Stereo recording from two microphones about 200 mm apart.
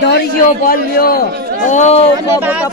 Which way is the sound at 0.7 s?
45° left (ahead or behind).